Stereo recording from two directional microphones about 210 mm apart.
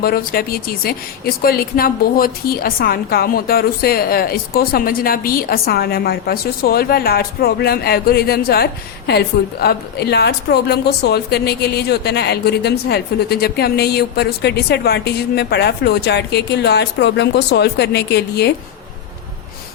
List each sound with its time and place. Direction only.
0.0 s speech: 45° left (ahead or behind)